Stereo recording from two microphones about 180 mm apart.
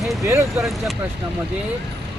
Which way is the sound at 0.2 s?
15° right (ahead or behind).